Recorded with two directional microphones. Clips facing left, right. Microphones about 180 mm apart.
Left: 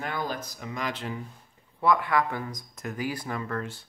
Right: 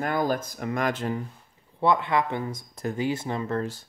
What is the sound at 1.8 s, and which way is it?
Speech, 25° right (ahead or behind).